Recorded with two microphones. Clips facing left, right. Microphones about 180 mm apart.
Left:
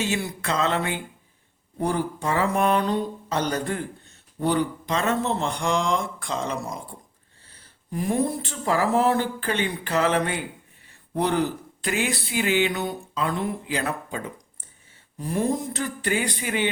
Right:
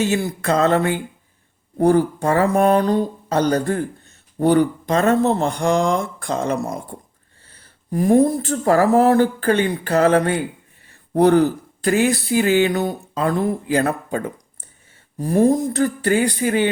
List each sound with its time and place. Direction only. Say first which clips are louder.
0.0 s speech: right 7 dB; 45° right (ahead or behind)